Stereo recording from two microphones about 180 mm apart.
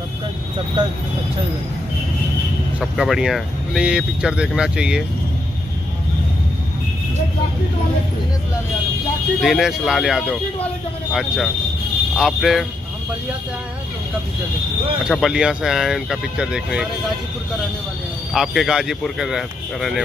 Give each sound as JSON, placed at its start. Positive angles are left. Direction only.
{"t": 2.8, "sound": "speech", "side_deg": -5}
{"t": 9.4, "sound": "speech", "side_deg": 0}
{"t": 15.0, "sound": "speech", "side_deg": -5}
{"t": 18.3, "sound": "speech", "side_deg": 0}